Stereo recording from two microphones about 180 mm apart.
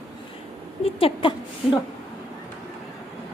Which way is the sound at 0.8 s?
30° left (ahead or behind).